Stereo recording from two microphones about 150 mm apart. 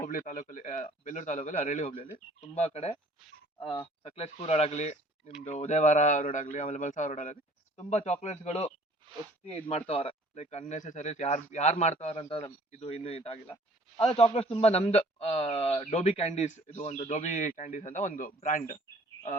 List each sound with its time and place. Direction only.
0.0 s speech: 60° left (ahead or behind)
2.4 s a man's voice: 45° left (ahead or behind)